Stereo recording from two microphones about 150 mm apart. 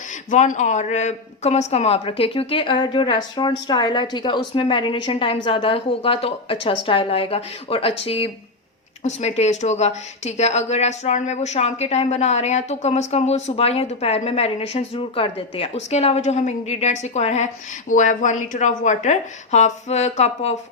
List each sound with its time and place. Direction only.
0.3 s a woman's voice: 55° left (ahead or behind)